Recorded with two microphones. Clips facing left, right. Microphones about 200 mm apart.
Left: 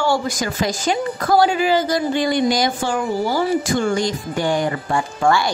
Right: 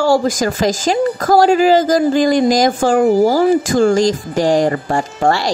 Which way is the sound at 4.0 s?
90° right.